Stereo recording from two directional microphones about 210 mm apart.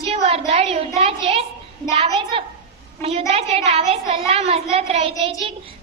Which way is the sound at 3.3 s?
30° right (ahead or behind).